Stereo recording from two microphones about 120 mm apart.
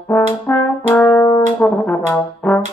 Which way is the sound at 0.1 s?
10° left (ahead or behind).